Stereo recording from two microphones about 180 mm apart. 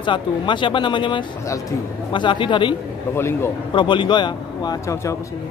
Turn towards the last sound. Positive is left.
turn(degrees=20)  # may be behind; listen again after turning